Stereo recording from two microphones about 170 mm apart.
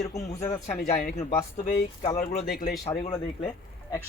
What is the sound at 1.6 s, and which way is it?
Speech, 50° left (ahead or behind).